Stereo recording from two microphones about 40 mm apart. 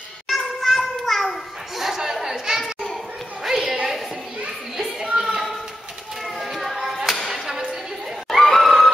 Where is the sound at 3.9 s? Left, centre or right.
Centre.